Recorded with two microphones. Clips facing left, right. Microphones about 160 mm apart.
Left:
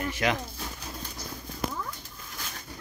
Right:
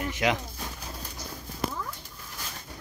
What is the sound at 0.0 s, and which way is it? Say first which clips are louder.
Speech: right 1 dB; 15° right (ahead or behind).